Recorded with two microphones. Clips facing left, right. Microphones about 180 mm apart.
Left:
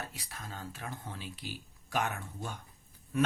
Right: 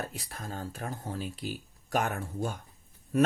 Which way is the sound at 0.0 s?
40° right (ahead or behind).